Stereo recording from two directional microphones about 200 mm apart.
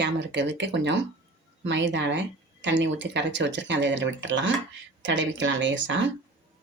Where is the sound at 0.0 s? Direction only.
60° right (ahead or behind).